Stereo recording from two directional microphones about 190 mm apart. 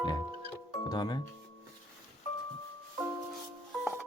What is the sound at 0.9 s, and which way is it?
Speech, 20° left (ahead or behind).